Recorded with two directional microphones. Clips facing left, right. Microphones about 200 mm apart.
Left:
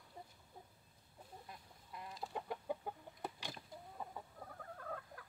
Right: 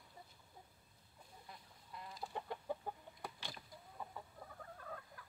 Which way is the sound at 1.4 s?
20° left (ahead or behind).